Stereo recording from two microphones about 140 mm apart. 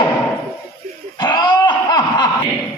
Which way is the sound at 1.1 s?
30° left (ahead or behind).